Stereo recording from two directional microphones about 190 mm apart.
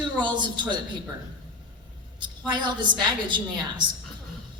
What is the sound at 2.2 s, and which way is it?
A woman's voice, 25° right (ahead or behind).